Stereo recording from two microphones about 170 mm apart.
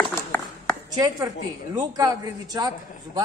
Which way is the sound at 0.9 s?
20° right (ahead or behind).